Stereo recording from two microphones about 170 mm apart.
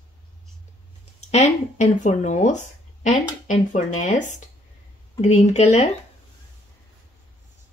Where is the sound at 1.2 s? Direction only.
40° left (ahead or behind).